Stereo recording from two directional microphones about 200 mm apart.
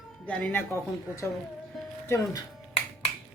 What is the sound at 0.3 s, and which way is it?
Speech, 5° left (ahead or behind).